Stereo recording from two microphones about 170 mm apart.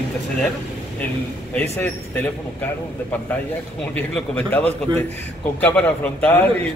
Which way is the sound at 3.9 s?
5° left (ahead or behind).